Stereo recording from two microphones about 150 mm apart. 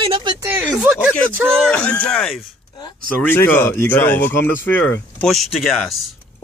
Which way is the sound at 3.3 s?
15° left (ahead or behind).